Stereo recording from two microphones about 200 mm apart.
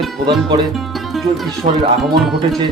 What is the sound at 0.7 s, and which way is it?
Music, centre (ahead or behind).